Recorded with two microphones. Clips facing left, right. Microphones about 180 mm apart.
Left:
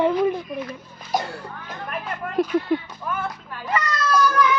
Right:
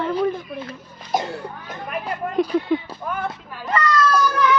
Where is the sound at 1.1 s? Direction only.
25° right (ahead or behind).